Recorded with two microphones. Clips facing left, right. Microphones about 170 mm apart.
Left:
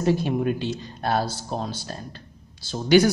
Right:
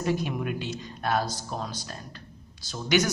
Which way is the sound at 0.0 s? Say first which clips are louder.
Left 6 dB; 30° left (ahead or behind).